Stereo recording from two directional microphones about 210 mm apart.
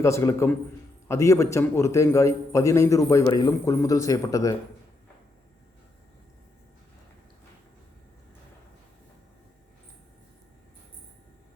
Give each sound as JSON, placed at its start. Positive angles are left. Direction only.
{"t": 0.0, "sound": "a man's voice", "side_deg": 10}